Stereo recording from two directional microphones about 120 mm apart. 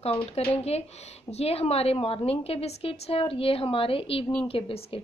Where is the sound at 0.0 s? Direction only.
50° left (ahead or behind).